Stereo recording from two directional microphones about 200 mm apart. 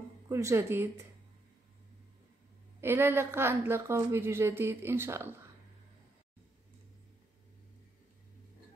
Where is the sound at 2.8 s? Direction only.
10° right (ahead or behind).